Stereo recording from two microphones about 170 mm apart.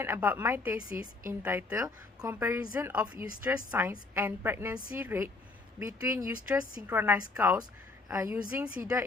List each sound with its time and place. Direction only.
0.0 s a woman's voice: 10° right (ahead or behind)
8.8 s a woman's voice: 15° right (ahead or behind)